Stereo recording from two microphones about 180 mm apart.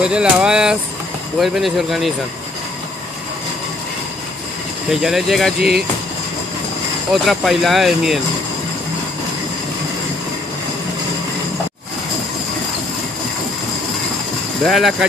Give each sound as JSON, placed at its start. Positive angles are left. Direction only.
{"t": 0.0, "sound": "speech", "side_deg": -5}
{"t": 5.0, "sound": "speech", "side_deg": 0}
{"t": 5.6, "sound": "speech", "side_deg": -60}
{"t": 7.2, "sound": "speech", "side_deg": 0}
{"t": 14.6, "sound": "speech", "side_deg": 0}